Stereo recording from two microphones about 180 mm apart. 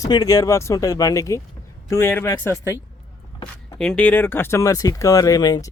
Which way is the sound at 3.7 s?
5° left (ahead or behind).